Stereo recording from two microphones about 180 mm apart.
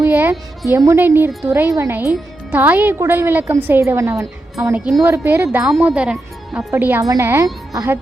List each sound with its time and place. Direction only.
0.0 s music: 10° right (ahead or behind)
0.7 s speech: 15° right (ahead or behind)